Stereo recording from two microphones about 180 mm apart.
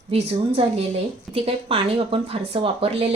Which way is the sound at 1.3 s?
30° right (ahead or behind).